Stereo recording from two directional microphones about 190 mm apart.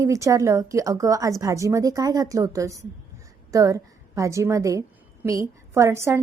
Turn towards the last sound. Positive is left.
turn(degrees=-15)  # may be behind; listen again after turning